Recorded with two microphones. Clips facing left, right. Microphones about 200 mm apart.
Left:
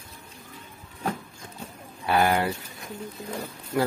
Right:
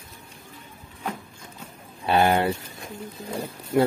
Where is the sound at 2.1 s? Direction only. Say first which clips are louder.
Right 2 dB; 25° right (ahead or behind).